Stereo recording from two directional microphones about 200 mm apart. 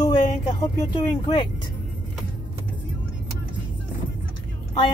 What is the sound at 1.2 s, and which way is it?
Speech, 25° left (ahead or behind).